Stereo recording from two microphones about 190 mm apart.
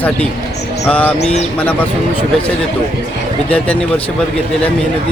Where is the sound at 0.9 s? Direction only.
5° left (ahead or behind).